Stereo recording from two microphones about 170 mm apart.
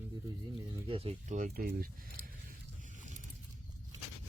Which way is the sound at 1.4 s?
60° right (ahead or behind).